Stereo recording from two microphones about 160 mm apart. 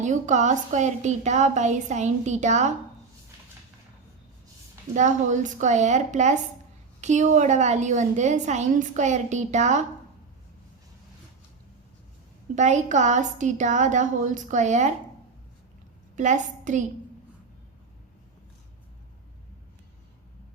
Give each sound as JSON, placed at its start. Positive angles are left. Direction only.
{"t": 0.0, "sound": "a woman's voice", "side_deg": -50}
{"t": 4.9, "sound": "a woman's voice", "side_deg": -50}
{"t": 12.5, "sound": "a woman's voice", "side_deg": -50}
{"t": 16.1, "sound": "a woman's voice", "side_deg": -50}